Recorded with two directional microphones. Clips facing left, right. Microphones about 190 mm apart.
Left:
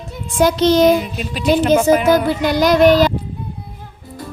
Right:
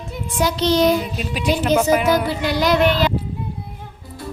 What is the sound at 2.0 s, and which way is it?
Child singing, 50° left (ahead or behind).